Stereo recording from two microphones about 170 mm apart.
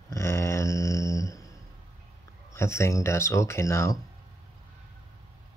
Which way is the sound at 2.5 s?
15° left (ahead or behind).